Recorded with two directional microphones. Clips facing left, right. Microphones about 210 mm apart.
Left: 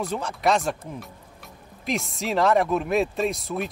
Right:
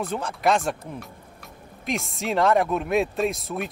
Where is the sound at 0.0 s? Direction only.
Centre (ahead or behind).